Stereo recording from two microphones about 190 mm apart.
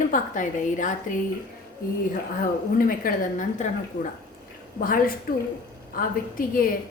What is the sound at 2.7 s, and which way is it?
Speech, 50° left (ahead or behind).